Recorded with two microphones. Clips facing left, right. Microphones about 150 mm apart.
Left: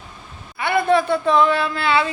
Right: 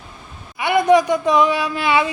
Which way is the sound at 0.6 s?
15° right (ahead or behind).